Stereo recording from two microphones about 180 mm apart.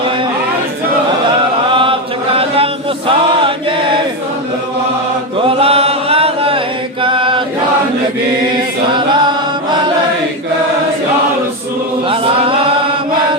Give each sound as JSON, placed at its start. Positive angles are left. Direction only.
{"t": 1.7, "sound": "chant", "side_deg": -30}
{"t": 5.5, "sound": "chant", "side_deg": -30}
{"t": 12.0, "sound": "chant", "side_deg": -30}